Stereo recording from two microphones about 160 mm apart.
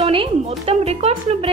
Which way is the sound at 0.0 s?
40° right (ahead or behind).